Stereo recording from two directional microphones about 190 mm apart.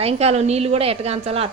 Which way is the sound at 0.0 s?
35° right (ahead or behind).